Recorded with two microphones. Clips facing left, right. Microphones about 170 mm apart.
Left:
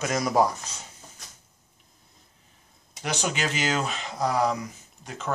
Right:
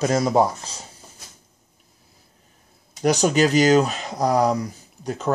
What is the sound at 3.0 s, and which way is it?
Speech, 40° right (ahead or behind).